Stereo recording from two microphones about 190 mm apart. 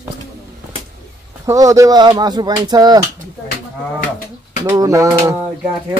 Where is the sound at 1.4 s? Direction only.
15° right (ahead or behind).